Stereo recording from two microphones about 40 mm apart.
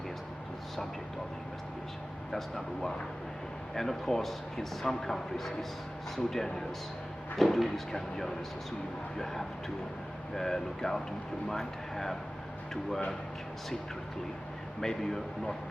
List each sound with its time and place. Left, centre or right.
2.3 s speech: centre
14.8 s speech: centre